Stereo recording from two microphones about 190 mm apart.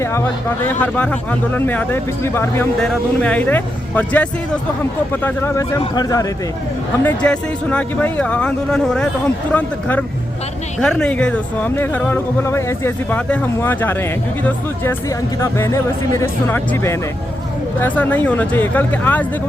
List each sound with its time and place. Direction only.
0.0 s speech: 15° left (ahead or behind)
7.0 s speech: 5° left (ahead or behind)
15.4 s speech: 15° left (ahead or behind)